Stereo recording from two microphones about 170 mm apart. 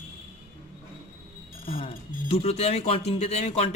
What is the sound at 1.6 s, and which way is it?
A man's voice, 35° left (ahead or behind).